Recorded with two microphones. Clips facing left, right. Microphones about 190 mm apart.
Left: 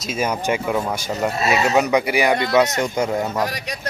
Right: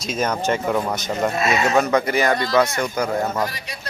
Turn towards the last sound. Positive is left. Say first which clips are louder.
# left 2 dB
turn(degrees=25)  # may be behind; listen again after turning